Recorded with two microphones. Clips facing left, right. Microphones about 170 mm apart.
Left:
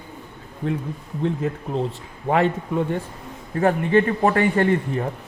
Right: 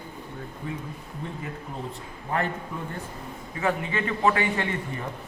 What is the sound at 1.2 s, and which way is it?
A man's voice, 80° left.